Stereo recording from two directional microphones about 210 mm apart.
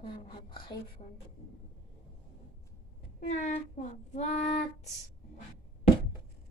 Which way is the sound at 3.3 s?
35° left (ahead or behind).